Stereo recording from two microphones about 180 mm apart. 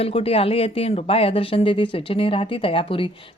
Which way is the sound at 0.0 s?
30° left (ahead or behind).